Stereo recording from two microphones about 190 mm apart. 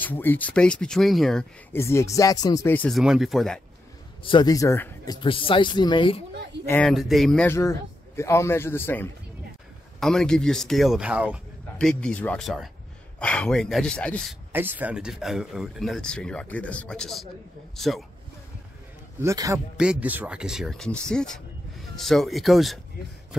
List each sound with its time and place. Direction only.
0.0 s speech: 10° left (ahead or behind)
1.7 s a man's voice: 15° left (ahead or behind)
3.0 s speech: centre (ahead or behind)
4.2 s speech: 25° left (ahead or behind)
6.7 s speech: 5° left (ahead or behind)
7.5 s a man's voice: 15° left (ahead or behind); by 11.4 s 5° right (ahead or behind)
11.8 s speech: 5° left (ahead or behind)
14.5 s speech: 10° right (ahead or behind)
19.2 s a man's voice: 15° right (ahead or behind)
19.8 s speech: 5° right (ahead or behind)